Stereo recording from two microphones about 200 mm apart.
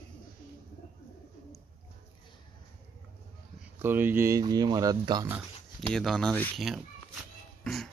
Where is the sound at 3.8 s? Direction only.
10° right (ahead or behind).